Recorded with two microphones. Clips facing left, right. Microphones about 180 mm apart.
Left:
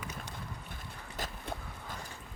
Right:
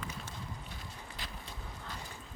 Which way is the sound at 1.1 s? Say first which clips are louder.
Left 11 dB; 50° left (ahead or behind).